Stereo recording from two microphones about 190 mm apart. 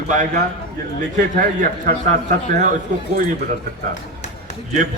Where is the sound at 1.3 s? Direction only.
45° right (ahead or behind).